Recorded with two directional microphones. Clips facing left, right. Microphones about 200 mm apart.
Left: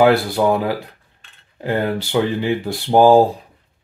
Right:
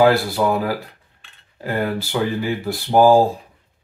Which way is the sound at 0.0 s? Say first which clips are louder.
Left 1 dB; 20° left (ahead or behind).